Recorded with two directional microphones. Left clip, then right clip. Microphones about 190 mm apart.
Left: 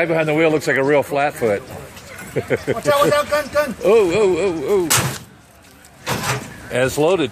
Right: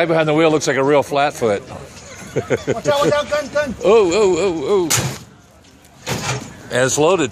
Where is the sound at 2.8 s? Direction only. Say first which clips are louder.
Left 2 dB; 20° left (ahead or behind).